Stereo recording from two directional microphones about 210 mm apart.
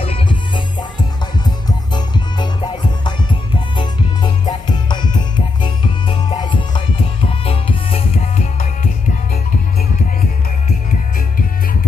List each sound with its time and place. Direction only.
0.0 s music: 25° left (ahead or behind)
10.9 s music: 40° left (ahead or behind)